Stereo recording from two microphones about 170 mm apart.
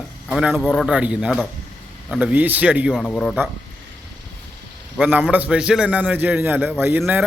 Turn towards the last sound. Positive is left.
turn(degrees=-10)  # may be behind; listen again after turning